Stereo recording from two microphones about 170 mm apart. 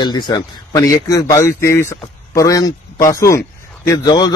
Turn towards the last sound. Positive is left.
turn(degrees=25)  # may be behind; listen again after turning